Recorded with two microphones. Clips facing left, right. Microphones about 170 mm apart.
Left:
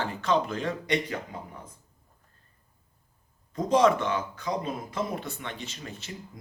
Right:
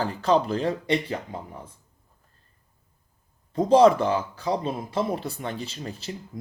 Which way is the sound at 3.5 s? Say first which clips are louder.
Right 5 dB; 30° right (ahead or behind).